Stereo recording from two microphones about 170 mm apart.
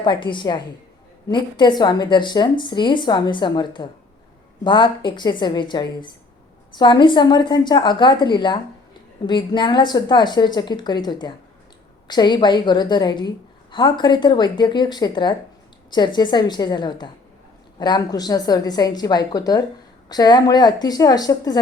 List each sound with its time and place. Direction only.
0.0 s a woman's voice: 30° left (ahead or behind)